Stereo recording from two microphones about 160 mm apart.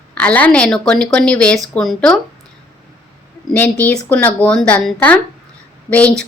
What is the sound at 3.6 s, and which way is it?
A woman's voice, 10° left (ahead or behind).